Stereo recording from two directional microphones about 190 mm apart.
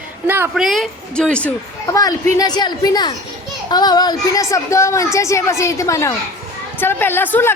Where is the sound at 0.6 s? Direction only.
Centre (ahead or behind).